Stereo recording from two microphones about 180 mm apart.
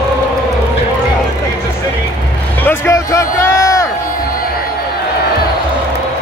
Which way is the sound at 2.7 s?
15° left (ahead or behind).